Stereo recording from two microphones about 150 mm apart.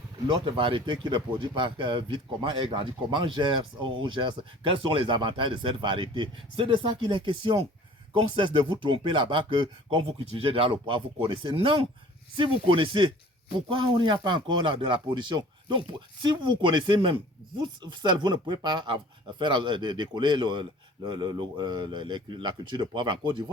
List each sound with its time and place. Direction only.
0.3 s speech: 35° right (ahead or behind)